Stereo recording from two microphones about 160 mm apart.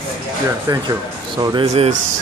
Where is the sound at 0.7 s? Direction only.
25° right (ahead or behind).